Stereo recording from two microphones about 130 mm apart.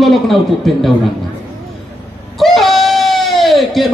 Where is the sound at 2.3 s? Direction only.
Centre (ahead or behind).